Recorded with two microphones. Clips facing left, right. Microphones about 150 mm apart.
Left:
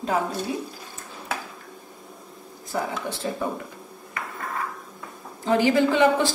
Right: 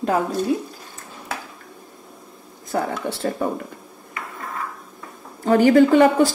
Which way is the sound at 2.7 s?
60° right (ahead or behind).